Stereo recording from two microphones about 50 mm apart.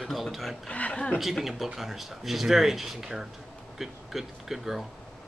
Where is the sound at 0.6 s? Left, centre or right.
Left.